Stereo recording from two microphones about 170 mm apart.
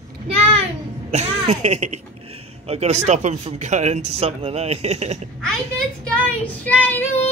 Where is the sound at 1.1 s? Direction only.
40° right (ahead or behind).